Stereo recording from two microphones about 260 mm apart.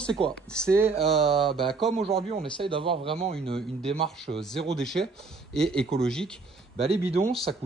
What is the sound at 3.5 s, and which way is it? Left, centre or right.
Speech, centre.